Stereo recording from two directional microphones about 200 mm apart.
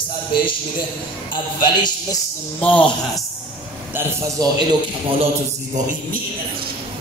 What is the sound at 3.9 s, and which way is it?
Speech, 10° right (ahead or behind).